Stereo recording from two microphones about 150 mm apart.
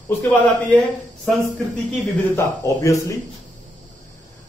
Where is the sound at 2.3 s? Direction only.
20° left (ahead or behind).